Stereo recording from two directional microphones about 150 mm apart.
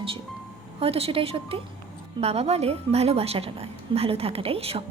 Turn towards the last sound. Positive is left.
turn(degrees=-40)  # may be behind; listen again after turning